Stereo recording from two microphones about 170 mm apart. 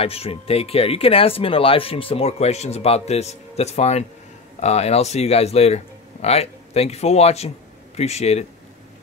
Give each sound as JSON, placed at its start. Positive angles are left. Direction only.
{"t": 0.0, "sound": "a man's voice", "side_deg": 35}